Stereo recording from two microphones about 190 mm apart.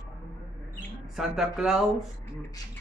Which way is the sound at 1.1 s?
Centre (ahead or behind).